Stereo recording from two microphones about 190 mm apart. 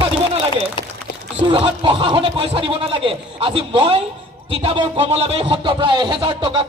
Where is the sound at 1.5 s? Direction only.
25° right (ahead or behind).